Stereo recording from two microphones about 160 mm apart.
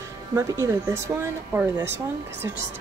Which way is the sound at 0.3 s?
15° right (ahead or behind).